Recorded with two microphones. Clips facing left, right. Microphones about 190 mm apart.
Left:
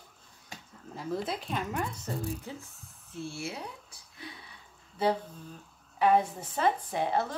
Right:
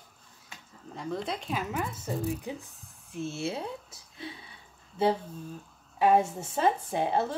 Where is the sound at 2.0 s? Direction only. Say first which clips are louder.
Right 4 dB; 15° right (ahead or behind).